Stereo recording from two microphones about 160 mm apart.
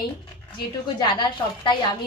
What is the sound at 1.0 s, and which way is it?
Speech, 30° left (ahead or behind).